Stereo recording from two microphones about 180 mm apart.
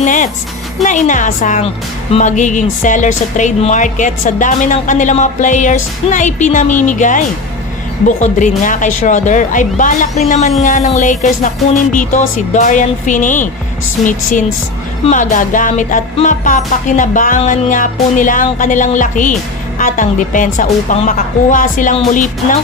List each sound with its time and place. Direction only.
0.0 s a sound: 45° left (ahead or behind)
0.8 s speech: 45° left (ahead or behind)
15.0 s speech: 45° left (ahead or behind)